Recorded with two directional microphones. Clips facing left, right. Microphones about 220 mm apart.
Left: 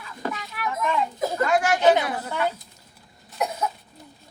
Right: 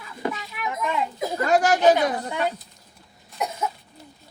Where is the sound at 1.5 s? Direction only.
40° right (ahead or behind).